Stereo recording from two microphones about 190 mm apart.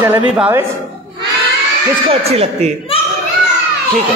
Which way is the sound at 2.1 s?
30° right (ahead or behind).